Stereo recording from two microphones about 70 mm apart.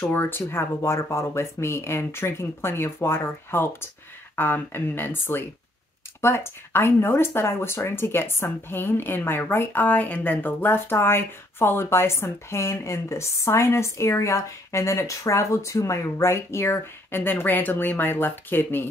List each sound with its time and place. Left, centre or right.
0.1 s speech: left